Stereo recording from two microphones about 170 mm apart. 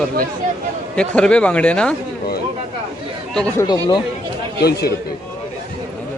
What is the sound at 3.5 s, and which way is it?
Speech, 25° left (ahead or behind).